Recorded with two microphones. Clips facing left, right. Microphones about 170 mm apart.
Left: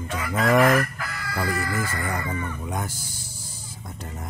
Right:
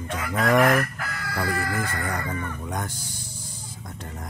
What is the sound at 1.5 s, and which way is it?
Speech, 50° right (ahead or behind).